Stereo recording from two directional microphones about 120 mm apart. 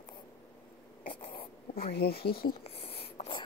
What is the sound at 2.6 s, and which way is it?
Writing, 50° left (ahead or behind).